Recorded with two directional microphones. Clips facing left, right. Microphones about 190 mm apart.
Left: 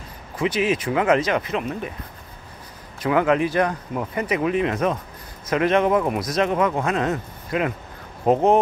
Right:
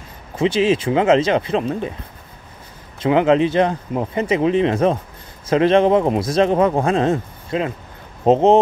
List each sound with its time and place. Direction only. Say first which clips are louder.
0.4 s a man's voice: right 5 dB; 30° right (ahead or behind)
3.0 s a man's voice: right 4 dB; 25° right (ahead or behind)